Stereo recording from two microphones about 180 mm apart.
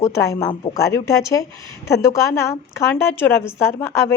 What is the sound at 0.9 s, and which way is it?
A woman's voice, 15° left (ahead or behind).